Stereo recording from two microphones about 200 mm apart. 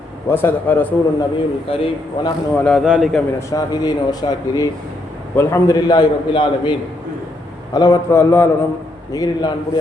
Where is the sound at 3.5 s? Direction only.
20° left (ahead or behind).